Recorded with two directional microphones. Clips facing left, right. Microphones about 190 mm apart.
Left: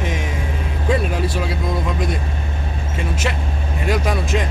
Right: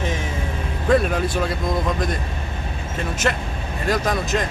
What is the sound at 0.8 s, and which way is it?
Speech, 5° left (ahead or behind).